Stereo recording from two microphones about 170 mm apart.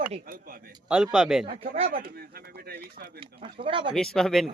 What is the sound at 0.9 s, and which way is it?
Speech, 5° right (ahead or behind).